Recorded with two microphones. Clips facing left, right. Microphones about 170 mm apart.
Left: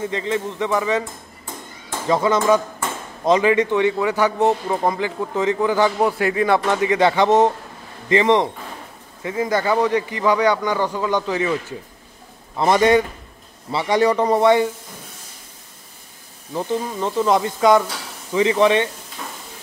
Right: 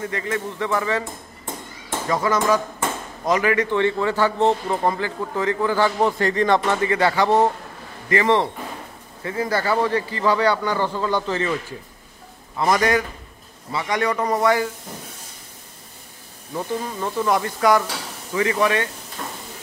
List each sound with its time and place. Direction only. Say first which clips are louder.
0.0 s speech: left 3 dB; 20° left (ahead or behind)
2.0 s a man's voice: left 3 dB; 25° left (ahead or behind)
12.5 s speech: left 4 dB; 25° left (ahead or behind)
16.5 s speech: left 3 dB; 20° left (ahead or behind)